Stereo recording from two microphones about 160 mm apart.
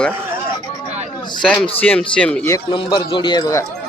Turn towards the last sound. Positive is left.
turn(degrees=25)  # may be behind; listen again after turning